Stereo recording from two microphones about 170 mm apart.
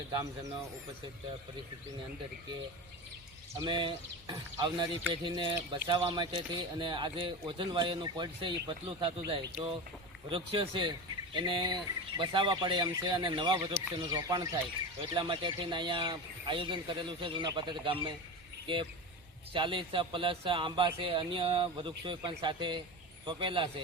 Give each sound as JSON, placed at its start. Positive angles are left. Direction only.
{"t": 0.1, "sound": "a man's voice", "side_deg": -25}
{"t": 3.6, "sound": "a man's voice", "side_deg": -30}